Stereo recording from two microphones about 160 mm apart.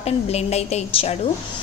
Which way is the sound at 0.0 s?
40° left (ahead or behind).